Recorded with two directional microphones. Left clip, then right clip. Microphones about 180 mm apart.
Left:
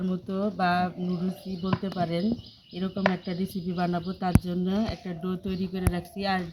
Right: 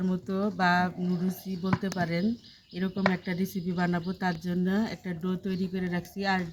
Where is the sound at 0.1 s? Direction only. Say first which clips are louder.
Left 1 dB; 15° right (ahead or behind).